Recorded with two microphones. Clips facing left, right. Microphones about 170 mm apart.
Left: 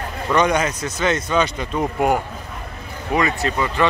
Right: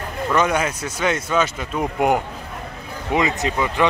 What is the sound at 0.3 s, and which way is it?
Speech, 5° right (ahead or behind).